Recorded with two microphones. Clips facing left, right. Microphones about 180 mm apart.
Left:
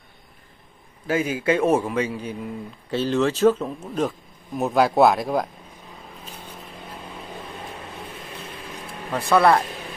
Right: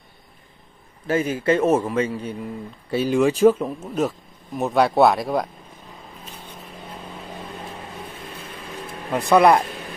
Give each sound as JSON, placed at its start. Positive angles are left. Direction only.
{"t": 1.0, "sound": "a man's voice", "side_deg": 10}
{"t": 1.6, "sound": "speech", "side_deg": -5}
{"t": 2.9, "sound": "speech", "side_deg": -10}
{"t": 9.1, "sound": "speech", "side_deg": -15}